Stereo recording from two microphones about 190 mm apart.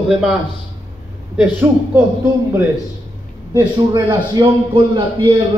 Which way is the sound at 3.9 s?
20° right (ahead or behind).